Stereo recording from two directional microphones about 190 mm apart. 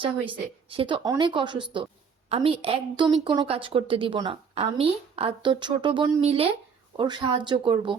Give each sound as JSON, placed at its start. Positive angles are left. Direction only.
{"t": 0.0, "sound": "a woman's voice", "side_deg": -30}